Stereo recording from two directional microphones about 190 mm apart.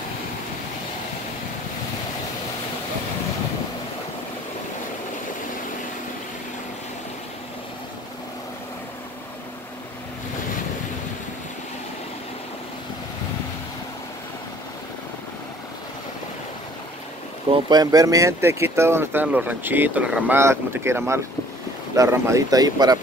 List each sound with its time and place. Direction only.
17.6 s speech: 20° right (ahead or behind)